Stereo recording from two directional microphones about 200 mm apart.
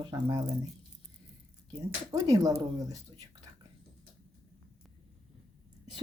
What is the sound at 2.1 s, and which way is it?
Speech, 15° right (ahead or behind).